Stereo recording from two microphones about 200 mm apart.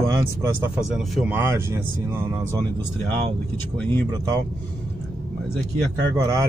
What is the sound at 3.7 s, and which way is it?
Speech, 5° left (ahead or behind).